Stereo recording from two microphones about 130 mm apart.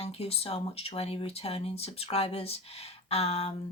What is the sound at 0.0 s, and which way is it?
Speech, 50° left (ahead or behind).